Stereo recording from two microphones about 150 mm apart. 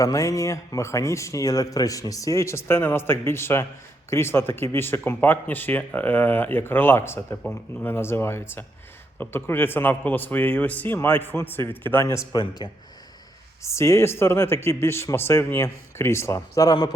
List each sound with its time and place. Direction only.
0.0 s speech: 25° left (ahead or behind)